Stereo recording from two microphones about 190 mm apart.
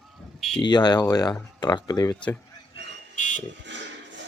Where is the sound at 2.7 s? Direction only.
40° left (ahead or behind).